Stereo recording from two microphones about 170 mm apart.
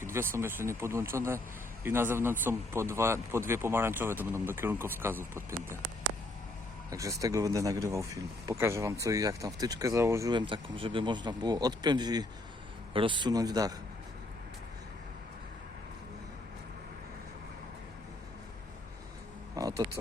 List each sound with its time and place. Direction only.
0.0 s speech: 15° right (ahead or behind)
6.9 s speech: 20° right (ahead or behind)
19.5 s a sound: 20° right (ahead or behind)